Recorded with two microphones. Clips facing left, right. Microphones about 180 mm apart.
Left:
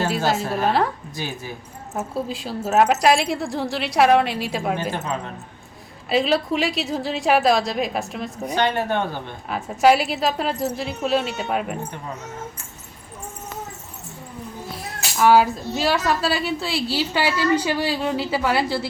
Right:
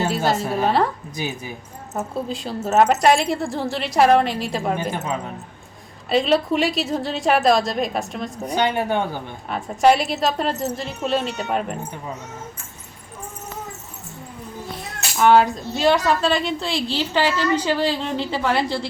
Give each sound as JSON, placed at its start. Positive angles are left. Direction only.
{"t": 0.3, "sound": "a woman's voice", "side_deg": 0}
{"t": 1.1, "sound": "speech", "side_deg": -15}
{"t": 1.9, "sound": "a woman's voice", "side_deg": 0}
{"t": 6.1, "sound": "a woman's voice", "side_deg": 0}
{"t": 8.5, "sound": "speech", "side_deg": -10}
{"t": 9.5, "sound": "a woman's voice", "side_deg": 0}
{"t": 14.7, "sound": "speech", "side_deg": 0}